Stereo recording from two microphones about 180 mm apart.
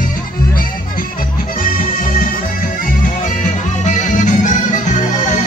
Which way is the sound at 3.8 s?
45° left (ahead or behind).